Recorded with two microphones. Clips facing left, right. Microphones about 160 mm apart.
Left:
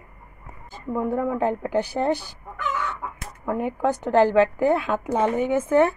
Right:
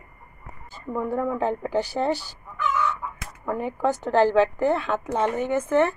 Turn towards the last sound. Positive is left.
turn(degrees=10)  # may be behind; listen again after turning